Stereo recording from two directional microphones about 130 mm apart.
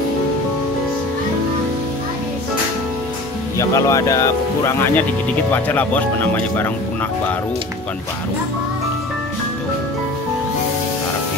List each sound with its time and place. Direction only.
3.5 s speech: 25° left (ahead or behind)